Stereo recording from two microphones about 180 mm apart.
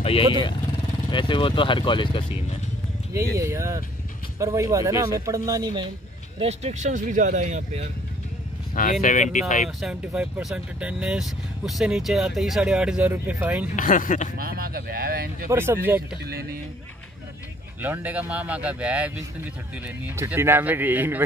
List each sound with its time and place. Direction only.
0.0 s speech: 30° left (ahead or behind)
3.3 s speech: 15° right (ahead or behind)
6.4 s speech: 40° right (ahead or behind)
9.0 s speech: 45° left (ahead or behind)
9.7 s speech: centre (ahead or behind)
13.7 s speech: 45° left (ahead or behind)
14.4 s speech: 55° right (ahead or behind)
15.4 s speech: 15° right (ahead or behind)
17.7 s speech: 10° right (ahead or behind)